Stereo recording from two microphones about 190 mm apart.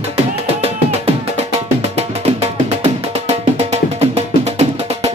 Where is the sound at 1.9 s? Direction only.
35° right (ahead or behind).